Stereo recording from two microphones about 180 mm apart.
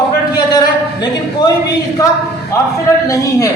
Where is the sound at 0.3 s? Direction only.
20° left (ahead or behind).